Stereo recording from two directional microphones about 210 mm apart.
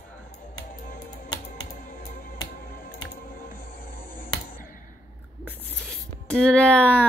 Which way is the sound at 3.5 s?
40° left (ahead or behind).